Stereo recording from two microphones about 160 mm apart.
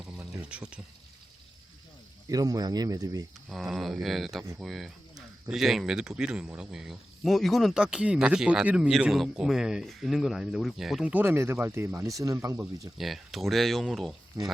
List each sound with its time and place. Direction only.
0.2 s speech: 10° right (ahead or behind)
2.3 s speech: 25° right (ahead or behind)
3.5 s speech: centre (ahead or behind); by 12.9 s 20° right (ahead or behind)
13.0 s speech: centre (ahead or behind)